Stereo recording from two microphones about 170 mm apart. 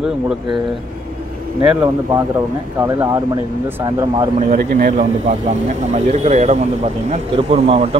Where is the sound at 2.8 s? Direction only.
15° right (ahead or behind).